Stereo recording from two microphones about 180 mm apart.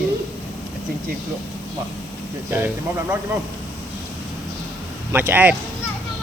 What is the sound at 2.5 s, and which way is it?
Speech, 10° right (ahead or behind).